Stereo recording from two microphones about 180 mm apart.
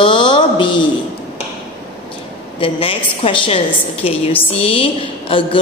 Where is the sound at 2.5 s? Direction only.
30° left (ahead or behind).